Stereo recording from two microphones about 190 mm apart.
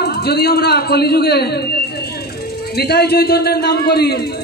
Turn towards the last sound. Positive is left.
turn(degrees=55)  # may be behind; listen again after turning